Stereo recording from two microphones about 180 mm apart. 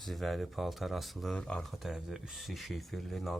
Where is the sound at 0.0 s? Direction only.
Centre (ahead or behind).